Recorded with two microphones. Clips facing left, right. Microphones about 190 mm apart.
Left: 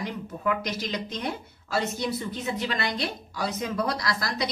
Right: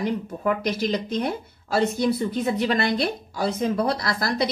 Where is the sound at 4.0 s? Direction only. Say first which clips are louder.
Right 5 dB; 55° right (ahead or behind).